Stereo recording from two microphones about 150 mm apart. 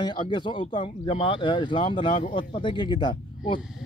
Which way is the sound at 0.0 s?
30° left (ahead or behind).